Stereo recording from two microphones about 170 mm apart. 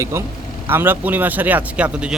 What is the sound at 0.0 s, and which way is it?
Speech, 15° right (ahead or behind).